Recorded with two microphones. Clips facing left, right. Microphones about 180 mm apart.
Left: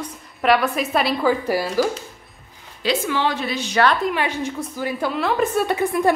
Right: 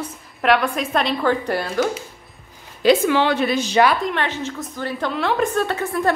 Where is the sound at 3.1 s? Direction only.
65° right (ahead or behind).